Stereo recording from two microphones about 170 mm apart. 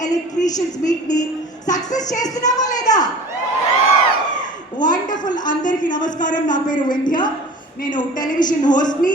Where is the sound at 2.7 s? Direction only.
20° left (ahead or behind).